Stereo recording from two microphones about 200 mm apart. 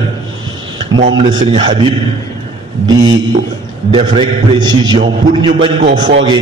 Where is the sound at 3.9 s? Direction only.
25° right (ahead or behind).